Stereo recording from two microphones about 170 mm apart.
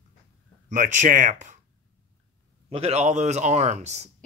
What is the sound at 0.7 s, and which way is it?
Speech, 45° right (ahead or behind).